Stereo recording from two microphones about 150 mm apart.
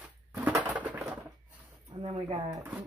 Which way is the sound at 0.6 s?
10° right (ahead or behind).